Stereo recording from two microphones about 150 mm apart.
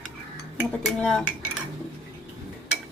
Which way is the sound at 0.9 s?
5° left (ahead or behind).